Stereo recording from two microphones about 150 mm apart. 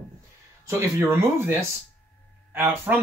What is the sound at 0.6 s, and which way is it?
Speech, 15° right (ahead or behind).